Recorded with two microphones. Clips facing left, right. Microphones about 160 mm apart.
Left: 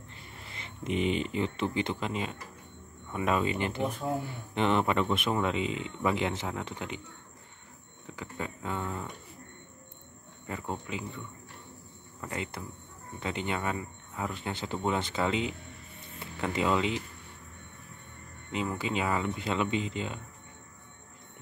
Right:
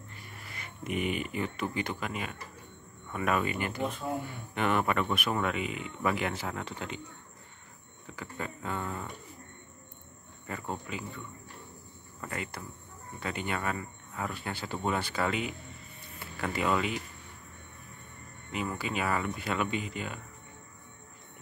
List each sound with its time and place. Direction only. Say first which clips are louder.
0.1 s speech: left 1 dB; 25° left (ahead or behind)
8.2 s a sound: left 1 dB; 15° left (ahead or behind)
10.4 s speech: left 1 dB; 15° left (ahead or behind)
12.2 s speech: left 2 dB; 20° left (ahead or behind)
18.5 s speech: left 2 dB; 20° left (ahead or behind)